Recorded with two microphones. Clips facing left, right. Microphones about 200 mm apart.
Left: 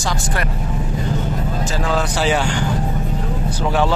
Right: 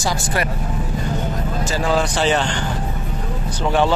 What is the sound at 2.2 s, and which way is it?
Speech, 10° left (ahead or behind).